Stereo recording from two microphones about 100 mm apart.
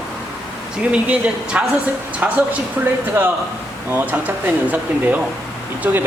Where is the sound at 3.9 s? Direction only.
20° right (ahead or behind).